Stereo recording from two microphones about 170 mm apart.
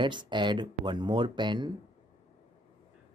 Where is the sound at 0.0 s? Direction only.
30° right (ahead or behind).